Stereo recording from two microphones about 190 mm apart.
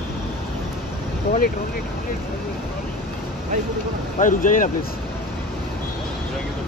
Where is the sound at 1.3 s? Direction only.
50° left (ahead or behind).